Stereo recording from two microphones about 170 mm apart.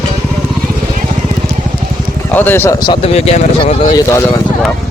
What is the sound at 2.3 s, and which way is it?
Speech, 10° left (ahead or behind).